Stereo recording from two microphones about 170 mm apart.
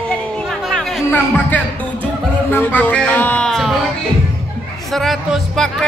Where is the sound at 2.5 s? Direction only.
10° left (ahead or behind).